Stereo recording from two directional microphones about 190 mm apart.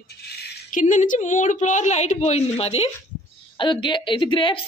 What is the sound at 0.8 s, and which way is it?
A woman's voice, 40° left (ahead or behind).